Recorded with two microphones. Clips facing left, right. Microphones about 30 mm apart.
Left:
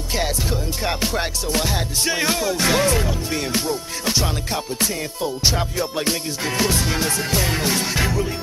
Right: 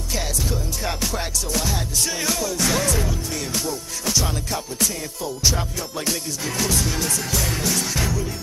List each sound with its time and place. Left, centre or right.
0.1 s music: left